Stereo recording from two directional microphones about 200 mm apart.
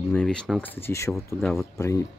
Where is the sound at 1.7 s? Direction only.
15° left (ahead or behind).